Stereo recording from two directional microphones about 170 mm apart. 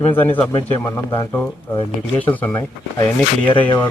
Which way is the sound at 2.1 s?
10° left (ahead or behind).